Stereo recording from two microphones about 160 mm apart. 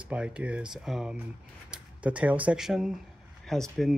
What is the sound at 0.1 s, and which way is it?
Speech, 5° right (ahead or behind).